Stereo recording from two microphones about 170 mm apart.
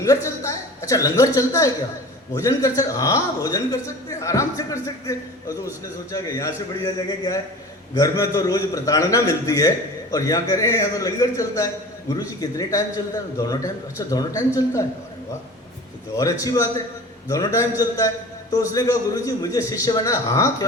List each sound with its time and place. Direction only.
0.0 s a man's voice: 20° left (ahead or behind)
16.1 s a man's voice: 20° left (ahead or behind)